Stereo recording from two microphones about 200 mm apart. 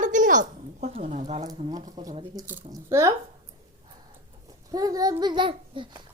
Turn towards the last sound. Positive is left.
turn(degrees=-25)  # may be behind; listen again after turning